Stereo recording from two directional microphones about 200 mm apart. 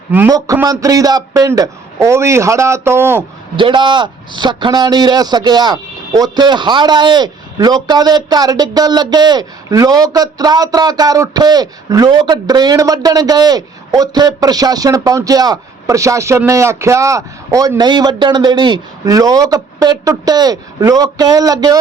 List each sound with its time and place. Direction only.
0.1 s a man's voice: 15° right (ahead or behind)
3.5 s a man's voice: 25° right (ahead or behind)